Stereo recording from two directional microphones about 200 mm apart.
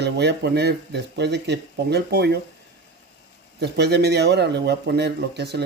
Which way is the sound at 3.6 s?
55° right (ahead or behind).